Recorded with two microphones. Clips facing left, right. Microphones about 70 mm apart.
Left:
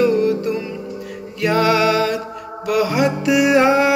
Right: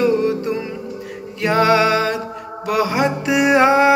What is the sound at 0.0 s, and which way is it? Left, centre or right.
Music, right.